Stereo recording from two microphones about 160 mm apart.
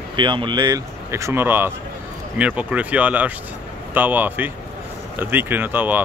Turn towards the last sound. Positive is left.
turn(degrees=-10)  # may be behind; listen again after turning